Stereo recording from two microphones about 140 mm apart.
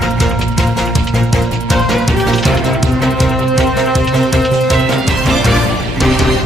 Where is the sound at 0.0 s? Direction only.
Centre (ahead or behind).